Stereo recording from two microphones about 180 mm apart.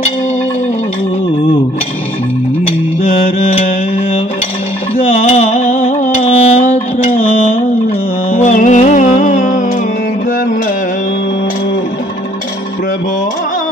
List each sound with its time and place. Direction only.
3.1 s music: 45° left (ahead or behind)
5.0 s music: 40° left (ahead or behind)